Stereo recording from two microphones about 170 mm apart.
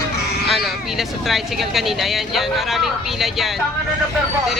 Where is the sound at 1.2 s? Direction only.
Centre (ahead or behind).